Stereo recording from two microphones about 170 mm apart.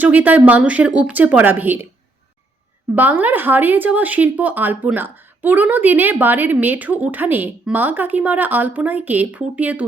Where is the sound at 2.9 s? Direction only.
10° right (ahead or behind).